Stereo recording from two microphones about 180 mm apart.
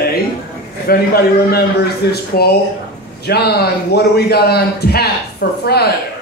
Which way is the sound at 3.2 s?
65° left (ahead or behind).